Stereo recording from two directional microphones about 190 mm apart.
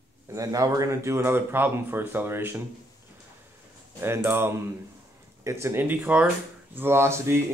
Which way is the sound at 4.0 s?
10° right (ahead or behind).